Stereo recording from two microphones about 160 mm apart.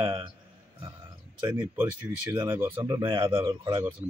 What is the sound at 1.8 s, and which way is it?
A man's voice, 15° right (ahead or behind).